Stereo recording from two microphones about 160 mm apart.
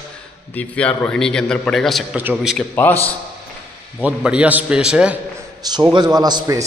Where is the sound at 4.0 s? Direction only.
10° right (ahead or behind).